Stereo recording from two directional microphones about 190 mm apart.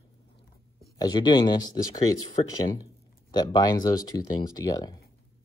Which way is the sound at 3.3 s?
20° left (ahead or behind).